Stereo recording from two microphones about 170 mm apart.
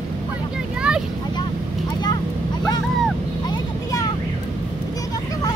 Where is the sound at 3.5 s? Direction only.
20° left (ahead or behind).